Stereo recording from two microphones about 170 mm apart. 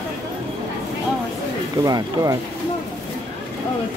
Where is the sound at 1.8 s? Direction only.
20° right (ahead or behind).